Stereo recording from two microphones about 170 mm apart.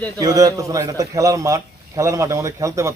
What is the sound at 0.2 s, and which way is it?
A man's voice, 20° right (ahead or behind).